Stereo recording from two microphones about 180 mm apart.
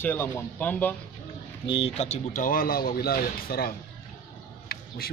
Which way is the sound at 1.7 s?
30° left (ahead or behind).